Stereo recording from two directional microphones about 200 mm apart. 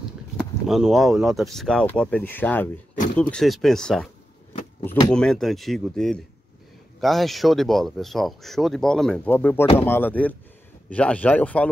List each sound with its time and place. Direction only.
0.4 s speech: centre (ahead or behind)
4.8 s speech: 15° left (ahead or behind)
5.1 s speech: 5° left (ahead or behind)